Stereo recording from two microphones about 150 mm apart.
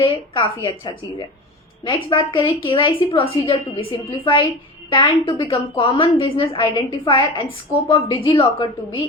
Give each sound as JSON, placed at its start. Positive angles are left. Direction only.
{"t": 0.0, "sound": "a woman's voice", "side_deg": 35}